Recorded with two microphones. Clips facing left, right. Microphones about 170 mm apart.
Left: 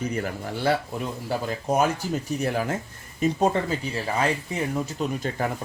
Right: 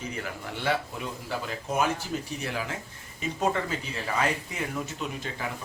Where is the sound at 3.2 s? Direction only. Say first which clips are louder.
Left 6 dB; 35° left (ahead or behind).